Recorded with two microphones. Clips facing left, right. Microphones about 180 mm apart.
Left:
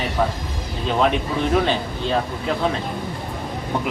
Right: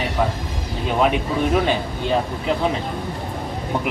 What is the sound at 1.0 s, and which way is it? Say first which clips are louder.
Speech: right 1 dB; 10° right (ahead or behind).